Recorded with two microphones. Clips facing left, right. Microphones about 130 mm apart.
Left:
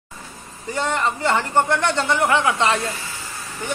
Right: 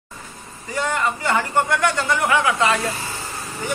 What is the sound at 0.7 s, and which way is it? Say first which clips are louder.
A man's voice: even; 25° left (ahead or behind).